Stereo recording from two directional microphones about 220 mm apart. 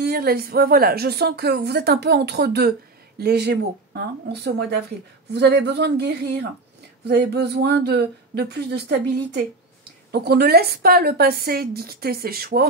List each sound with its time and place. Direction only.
0.0 s speech: 45° right (ahead or behind)
10.1 s speech: 45° right (ahead or behind)